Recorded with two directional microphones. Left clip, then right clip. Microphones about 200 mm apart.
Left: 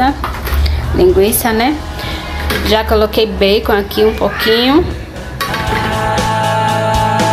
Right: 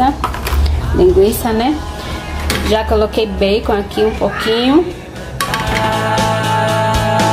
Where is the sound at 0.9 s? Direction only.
10° right (ahead or behind).